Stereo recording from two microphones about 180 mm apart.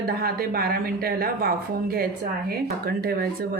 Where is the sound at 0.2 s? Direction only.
55° right (ahead or behind).